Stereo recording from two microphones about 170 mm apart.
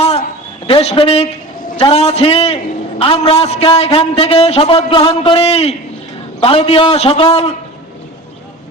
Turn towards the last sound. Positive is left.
turn(degrees=35)  # may be behind; listen again after turning